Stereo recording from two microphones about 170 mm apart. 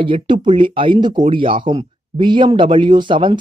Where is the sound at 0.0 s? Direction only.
30° right (ahead or behind).